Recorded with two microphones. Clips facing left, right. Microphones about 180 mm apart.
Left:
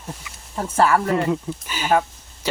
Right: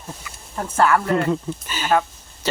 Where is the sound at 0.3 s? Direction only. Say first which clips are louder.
Left 1 dB; 10° left (ahead or behind).